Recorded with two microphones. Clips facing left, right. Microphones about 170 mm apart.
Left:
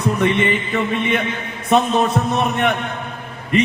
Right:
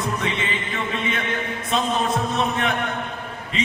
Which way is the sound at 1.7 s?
60° left (ahead or behind).